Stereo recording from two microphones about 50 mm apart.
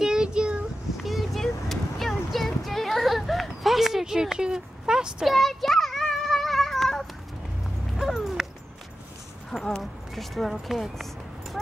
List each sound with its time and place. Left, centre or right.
0.0 s child singing: centre
0.9 s a sound: centre
5.3 s children playing: centre
9.5 s speech: centre
11.6 s clip-clop: centre